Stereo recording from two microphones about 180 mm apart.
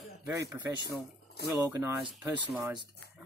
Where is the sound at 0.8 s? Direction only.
65° left (ahead or behind).